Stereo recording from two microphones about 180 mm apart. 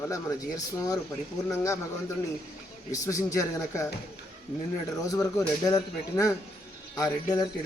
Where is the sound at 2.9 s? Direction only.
20° left (ahead or behind).